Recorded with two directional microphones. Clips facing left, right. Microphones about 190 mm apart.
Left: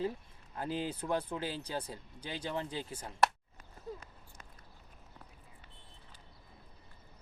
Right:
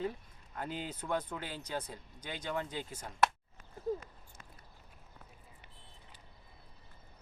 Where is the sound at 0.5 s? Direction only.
30° left (ahead or behind).